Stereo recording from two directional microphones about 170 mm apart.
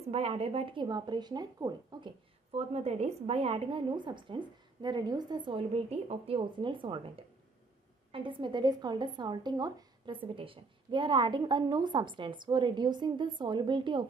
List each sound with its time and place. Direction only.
0.1 s speech: 35° right (ahead or behind)